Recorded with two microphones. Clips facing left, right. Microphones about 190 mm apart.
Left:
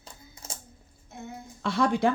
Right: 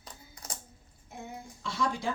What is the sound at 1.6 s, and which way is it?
Speech, 60° left (ahead or behind).